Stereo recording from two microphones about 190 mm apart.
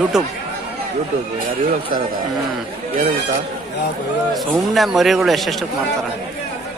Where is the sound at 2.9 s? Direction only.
50° right (ahead or behind).